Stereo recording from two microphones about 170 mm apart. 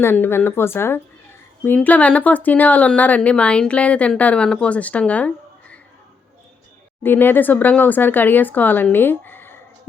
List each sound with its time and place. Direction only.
0.0 s speech: 15° left (ahead or behind)
7.0 s speech: 10° left (ahead or behind)